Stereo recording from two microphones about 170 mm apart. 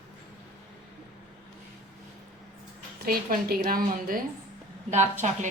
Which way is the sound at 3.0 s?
65° right (ahead or behind).